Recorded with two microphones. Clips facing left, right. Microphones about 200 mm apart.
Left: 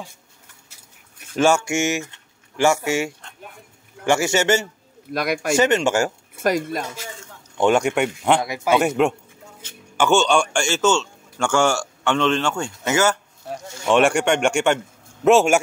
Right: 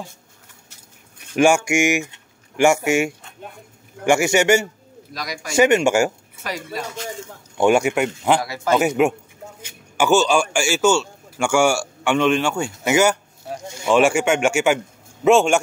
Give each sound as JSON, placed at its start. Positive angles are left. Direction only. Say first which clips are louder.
{"t": 1.3, "sound": "a man's voice", "louder": "right 2 dB", "side_deg": -15}
{"t": 5.1, "sound": "speech", "louder": "left 9 dB", "side_deg": 55}
{"t": 5.6, "sound": "a man's voice", "louder": "right 5 dB", "side_deg": -10}
{"t": 6.3, "sound": "speech", "louder": "left 8 dB", "side_deg": 50}
{"t": 7.5, "sound": "a man's voice", "louder": "right 1 dB", "side_deg": -10}
{"t": 8.4, "sound": "a man's voice", "louder": "even", "side_deg": 15}
{"t": 8.7, "sound": "a man's voice", "louder": "right 1 dB", "side_deg": -5}
{"t": 13.5, "sound": "a sound", "louder": "even", "side_deg": -5}
{"t": 13.8, "sound": "speech", "louder": "right 1 dB", "side_deg": 0}